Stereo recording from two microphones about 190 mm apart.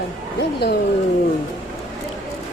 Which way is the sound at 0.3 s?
60° left (ahead or behind).